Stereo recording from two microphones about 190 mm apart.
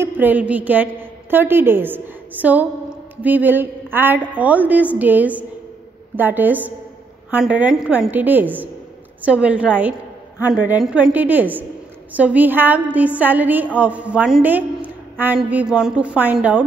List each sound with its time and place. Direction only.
0.0 s a sound: 10° right (ahead or behind)
1.3 s a woman's voice: 10° right (ahead or behind)
3.2 s a woman's voice: 10° right (ahead or behind)